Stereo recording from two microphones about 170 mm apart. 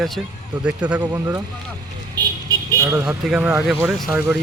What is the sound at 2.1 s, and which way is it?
Vehicle, 20° right (ahead or behind).